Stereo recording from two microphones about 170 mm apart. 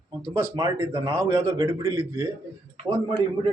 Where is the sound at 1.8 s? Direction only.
15° right (ahead or behind).